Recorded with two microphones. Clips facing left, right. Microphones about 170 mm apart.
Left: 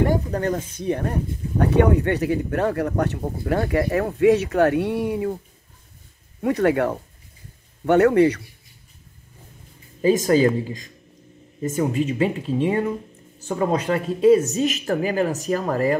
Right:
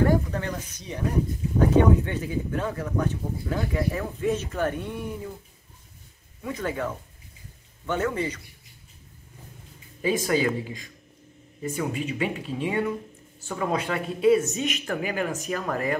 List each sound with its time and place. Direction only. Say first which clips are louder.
0.0 s a sound: left 1 dB; 25° left (ahead or behind)
0.7 s speech: left 4 dB; 55° left (ahead or behind)
6.4 s a man's voice: left 10 dB; 70° left (ahead or behind)
10.0 s speech: left 7 dB; 35° left (ahead or behind)